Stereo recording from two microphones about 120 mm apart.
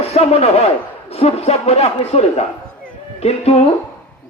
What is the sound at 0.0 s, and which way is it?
Speech, 60° left (ahead or behind).